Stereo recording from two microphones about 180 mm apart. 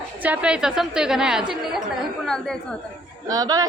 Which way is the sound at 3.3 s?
20° right (ahead or behind).